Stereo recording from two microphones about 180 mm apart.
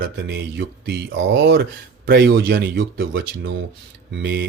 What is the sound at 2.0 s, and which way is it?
Speech, 60° right (ahead or behind).